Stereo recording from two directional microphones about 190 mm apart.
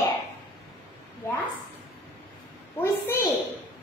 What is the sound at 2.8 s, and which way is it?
Speech, 15° left (ahead or behind).